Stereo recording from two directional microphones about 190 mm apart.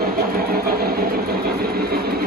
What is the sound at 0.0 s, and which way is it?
Vehicle, 50° right (ahead or behind).